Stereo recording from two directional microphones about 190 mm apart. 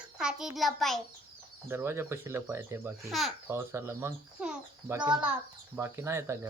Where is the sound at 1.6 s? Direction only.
10° right (ahead or behind).